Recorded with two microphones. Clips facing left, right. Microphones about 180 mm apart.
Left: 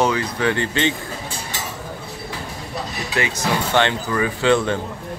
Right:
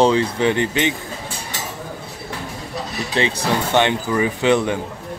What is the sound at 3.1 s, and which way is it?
Speech, 30° right (ahead or behind).